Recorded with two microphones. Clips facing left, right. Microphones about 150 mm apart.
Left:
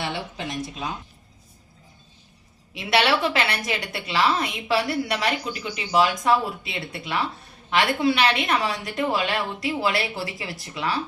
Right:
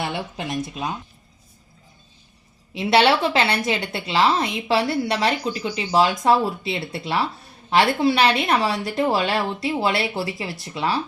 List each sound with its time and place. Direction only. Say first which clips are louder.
2.7 s a woman's voice: right 4 dB; 30° right (ahead or behind)